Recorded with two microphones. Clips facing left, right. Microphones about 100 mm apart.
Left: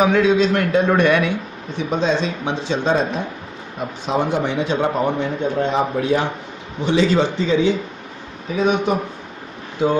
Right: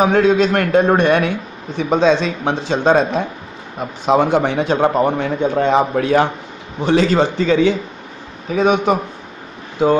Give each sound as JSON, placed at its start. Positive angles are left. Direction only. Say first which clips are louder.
{"t": 0.0, "sound": "a man's voice", "louder": "right 2 dB", "side_deg": -40}
{"t": 1.8, "sound": "a man's voice", "louder": "right 5 dB", "side_deg": -85}
{"t": 4.8, "sound": "a man's voice", "louder": "right 6 dB", "side_deg": -35}
{"t": 5.1, "sound": "a man's voice", "louder": "right 3 dB", "side_deg": -65}
{"t": 6.8, "sound": "a man's voice", "louder": "right 3 dB", "side_deg": -50}